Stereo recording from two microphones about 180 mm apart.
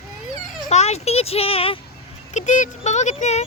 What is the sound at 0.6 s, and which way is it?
Speech, 35° left (ahead or behind).